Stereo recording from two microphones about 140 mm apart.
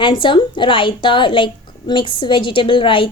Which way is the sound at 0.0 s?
35° left (ahead or behind).